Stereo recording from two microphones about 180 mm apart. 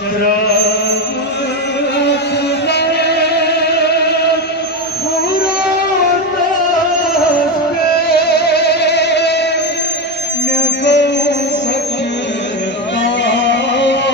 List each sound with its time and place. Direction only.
2.7 s music: 65° left (ahead or behind)
7.9 s music: 60° left (ahead or behind)
10.5 s mantra: 75° left (ahead or behind)
13.0 s music: 90° left